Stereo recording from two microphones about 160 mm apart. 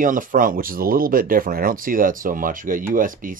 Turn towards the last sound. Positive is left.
turn(degrees=-60)  # may be behind; listen again after turning